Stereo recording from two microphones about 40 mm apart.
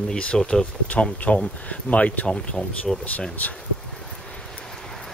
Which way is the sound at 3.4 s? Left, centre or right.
Left.